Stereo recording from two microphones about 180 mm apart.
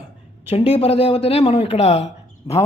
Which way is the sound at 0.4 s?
35° left (ahead or behind).